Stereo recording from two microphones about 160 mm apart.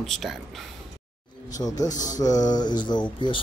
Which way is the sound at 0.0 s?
Centre (ahead or behind).